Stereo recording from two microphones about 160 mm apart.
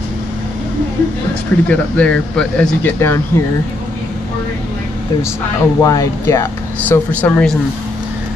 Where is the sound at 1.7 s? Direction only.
5° left (ahead or behind).